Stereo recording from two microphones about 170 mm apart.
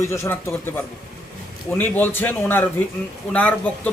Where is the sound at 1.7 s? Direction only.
10° left (ahead or behind).